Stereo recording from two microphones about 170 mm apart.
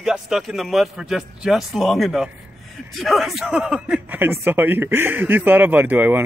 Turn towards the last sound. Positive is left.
turn(degrees=-10)  # may be behind; listen again after turning